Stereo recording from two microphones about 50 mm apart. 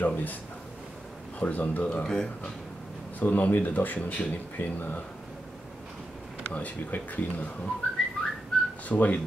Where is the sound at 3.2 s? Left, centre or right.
Left.